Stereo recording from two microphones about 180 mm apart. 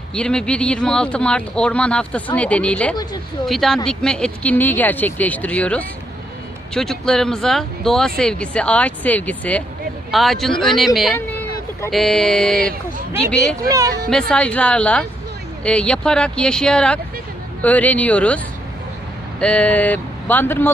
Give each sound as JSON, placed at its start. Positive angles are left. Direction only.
{"t": 0.1, "sound": "speech", "side_deg": 5}
{"t": 11.9, "sound": "speech", "side_deg": 0}
{"t": 13.7, "sound": "speech", "side_deg": -20}
{"t": 14.3, "sound": "speech", "side_deg": 5}
{"t": 19.4, "sound": "speech", "side_deg": 5}